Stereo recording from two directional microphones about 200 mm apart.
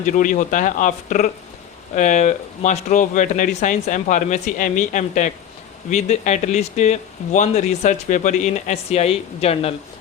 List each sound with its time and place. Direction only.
0.0 s speech: 40° left (ahead or behind)